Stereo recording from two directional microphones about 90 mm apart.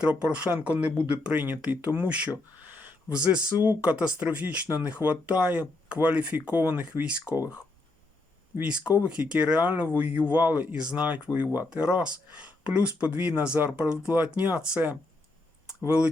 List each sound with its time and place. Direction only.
0.0 s speech: 15° right (ahead or behind)
3.1 s speech: 15° right (ahead or behind)
8.6 s speech: 10° right (ahead or behind)